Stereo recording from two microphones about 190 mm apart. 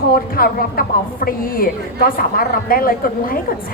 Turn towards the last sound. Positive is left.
turn(degrees=50)  # may be behind; listen again after turning